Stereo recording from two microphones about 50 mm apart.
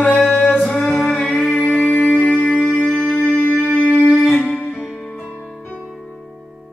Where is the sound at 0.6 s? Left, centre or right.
Centre.